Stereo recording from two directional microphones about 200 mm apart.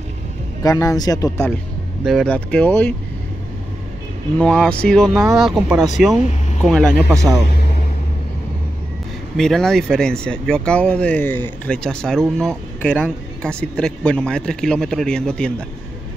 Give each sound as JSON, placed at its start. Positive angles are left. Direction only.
{"t": 0.6, "sound": "speech", "side_deg": 15}
{"t": 2.0, "sound": "speech", "side_deg": 5}
{"t": 4.4, "sound": "speech", "side_deg": 5}
{"t": 7.1, "sound": "a man's voice", "side_deg": -15}
{"t": 9.4, "sound": "speech", "side_deg": 0}